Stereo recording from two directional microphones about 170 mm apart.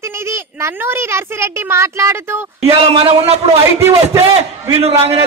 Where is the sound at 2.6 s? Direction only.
35° right (ahead or behind).